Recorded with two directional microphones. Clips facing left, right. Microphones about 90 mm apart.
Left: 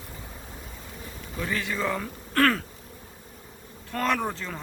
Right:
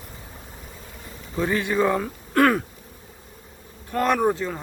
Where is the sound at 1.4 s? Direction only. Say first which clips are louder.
Right 7 dB; 20° right (ahead or behind).